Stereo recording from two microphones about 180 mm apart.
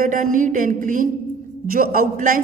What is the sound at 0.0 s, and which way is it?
A man's voice, 45° right (ahead or behind).